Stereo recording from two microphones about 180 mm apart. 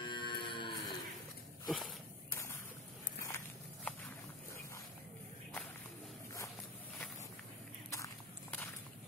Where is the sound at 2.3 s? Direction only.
15° left (ahead or behind).